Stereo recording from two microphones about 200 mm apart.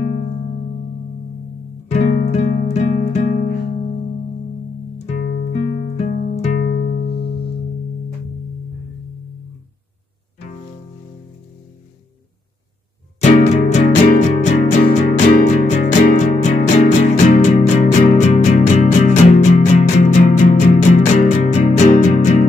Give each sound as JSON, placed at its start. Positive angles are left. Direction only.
{"t": 1.9, "sound": "music", "side_deg": 35}
{"t": 4.9, "sound": "music", "side_deg": 35}
{"t": 5.2, "sound": "music", "side_deg": 50}
{"t": 5.7, "sound": "music", "side_deg": 35}
{"t": 6.6, "sound": "music", "side_deg": 50}
{"t": 13.2, "sound": "music", "side_deg": 35}